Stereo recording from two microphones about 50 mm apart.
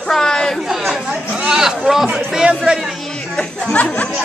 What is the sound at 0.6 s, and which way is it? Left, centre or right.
Speech, centre.